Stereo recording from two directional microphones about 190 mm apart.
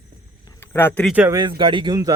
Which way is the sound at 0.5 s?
10° left (ahead or behind).